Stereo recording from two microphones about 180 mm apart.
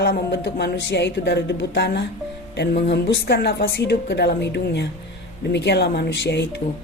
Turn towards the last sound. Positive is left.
turn(degrees=75)  # may be behind; listen again after turning